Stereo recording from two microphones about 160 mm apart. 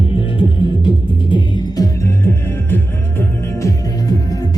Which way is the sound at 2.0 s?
15° left (ahead or behind).